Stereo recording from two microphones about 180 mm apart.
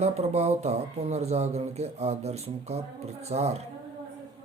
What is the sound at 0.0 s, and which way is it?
Speech, 35° right (ahead or behind).